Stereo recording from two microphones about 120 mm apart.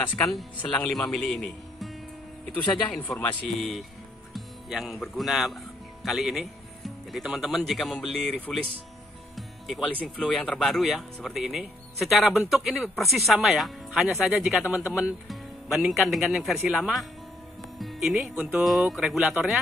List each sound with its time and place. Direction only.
0.6 s speech: 5° left (ahead or behind)
2.9 s a man's voice: 10° left (ahead or behind)
3.4 s speech: centre (ahead or behind)
9.3 s music: centre (ahead or behind)
10.0 s speech: 10° left (ahead or behind)